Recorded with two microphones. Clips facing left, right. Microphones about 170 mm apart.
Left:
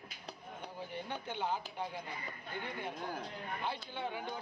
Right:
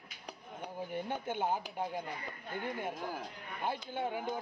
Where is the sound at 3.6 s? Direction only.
50° right (ahead or behind).